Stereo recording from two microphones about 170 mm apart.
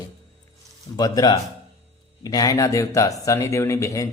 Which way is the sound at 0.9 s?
25° left (ahead or behind).